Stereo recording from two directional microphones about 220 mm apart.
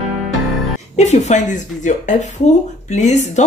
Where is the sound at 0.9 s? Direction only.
30° left (ahead or behind).